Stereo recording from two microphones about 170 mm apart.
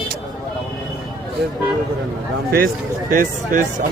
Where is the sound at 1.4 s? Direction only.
75° right (ahead or behind).